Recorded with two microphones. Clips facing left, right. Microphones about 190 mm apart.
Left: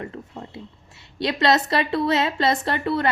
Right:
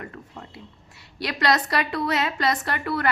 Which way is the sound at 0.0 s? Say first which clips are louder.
Left 5 dB; 25° left (ahead or behind).